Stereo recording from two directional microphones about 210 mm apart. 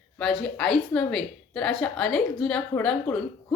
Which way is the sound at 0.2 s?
5° left (ahead or behind).